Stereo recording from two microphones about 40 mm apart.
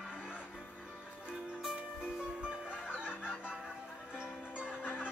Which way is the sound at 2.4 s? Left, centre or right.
Right.